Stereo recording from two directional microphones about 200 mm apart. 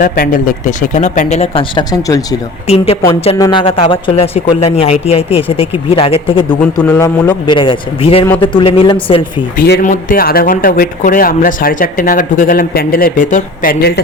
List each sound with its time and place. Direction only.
0.0 s speech: 40° left (ahead or behind); by 2.2 s 20° left (ahead or behind)
2.6 s speech: 30° left (ahead or behind)
3.3 s speech: 20° left (ahead or behind)
6.8 s a man's voice: 10° left (ahead or behind)
7.4 s speech: 25° left (ahead or behind)
9.6 s speech: 55° left (ahead or behind)
9.8 s speech: 40° left (ahead or behind)